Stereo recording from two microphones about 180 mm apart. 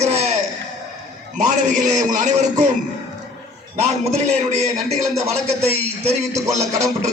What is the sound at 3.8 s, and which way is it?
A man's voice, 35° right (ahead or behind).